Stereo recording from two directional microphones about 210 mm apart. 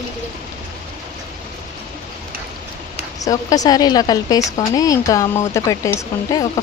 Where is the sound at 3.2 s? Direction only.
15° left (ahead or behind).